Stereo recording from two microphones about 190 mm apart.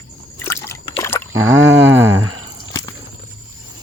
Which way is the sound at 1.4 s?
90° right.